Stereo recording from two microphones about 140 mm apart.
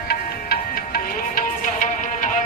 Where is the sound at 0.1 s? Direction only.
90° left.